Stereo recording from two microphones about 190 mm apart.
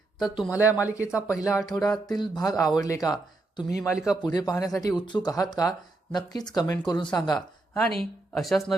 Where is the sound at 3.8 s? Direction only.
5° right (ahead or behind).